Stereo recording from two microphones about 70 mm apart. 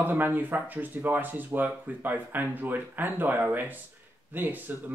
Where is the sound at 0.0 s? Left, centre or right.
Right.